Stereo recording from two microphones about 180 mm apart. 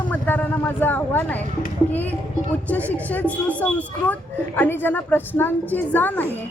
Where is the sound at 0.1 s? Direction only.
10° left (ahead or behind).